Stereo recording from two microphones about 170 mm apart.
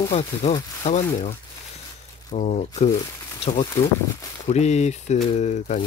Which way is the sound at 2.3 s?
45° left (ahead or behind).